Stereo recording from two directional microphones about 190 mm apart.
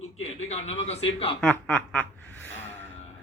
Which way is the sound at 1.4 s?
5° left (ahead or behind).